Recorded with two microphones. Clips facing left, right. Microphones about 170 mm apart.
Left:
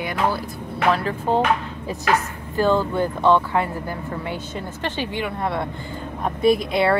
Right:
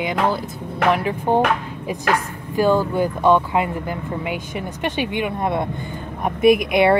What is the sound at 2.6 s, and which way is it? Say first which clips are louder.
Speech: right 2 dB; 10° right (ahead or behind).